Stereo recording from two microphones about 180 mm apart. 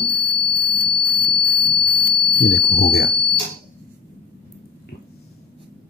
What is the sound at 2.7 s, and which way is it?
Speech, 60° left (ahead or behind).